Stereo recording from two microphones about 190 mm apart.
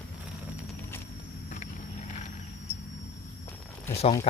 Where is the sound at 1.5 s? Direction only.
40° left (ahead or behind).